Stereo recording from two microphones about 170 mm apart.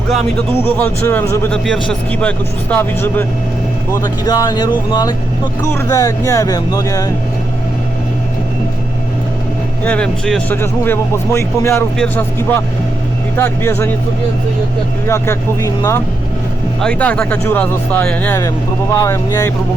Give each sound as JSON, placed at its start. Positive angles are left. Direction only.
{"t": 0.5, "sound": "speech", "side_deg": 10}
{"t": 1.6, "sound": "speech", "side_deg": 5}
{"t": 3.9, "sound": "speech", "side_deg": 20}
{"t": 9.8, "sound": "speech", "side_deg": 5}
{"t": 15.0, "sound": "speech", "side_deg": 15}
{"t": 18.3, "sound": "speech", "side_deg": 20}